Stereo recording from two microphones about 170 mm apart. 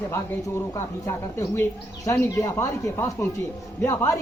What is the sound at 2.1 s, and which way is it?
Speech, 20° left (ahead or behind).